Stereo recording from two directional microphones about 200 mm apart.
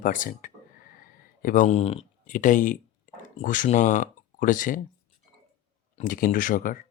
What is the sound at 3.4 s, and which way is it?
Speech, 40° left (ahead or behind).